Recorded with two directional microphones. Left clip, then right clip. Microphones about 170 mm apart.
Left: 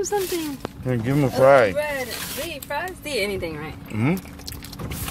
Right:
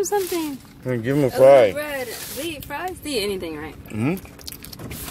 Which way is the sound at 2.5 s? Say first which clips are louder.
Right 1 dB; 50° right (ahead or behind).